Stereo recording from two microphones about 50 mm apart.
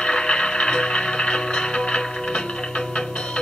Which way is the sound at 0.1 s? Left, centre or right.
Centre.